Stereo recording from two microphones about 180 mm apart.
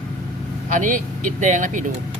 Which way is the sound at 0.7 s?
45° right (ahead or behind).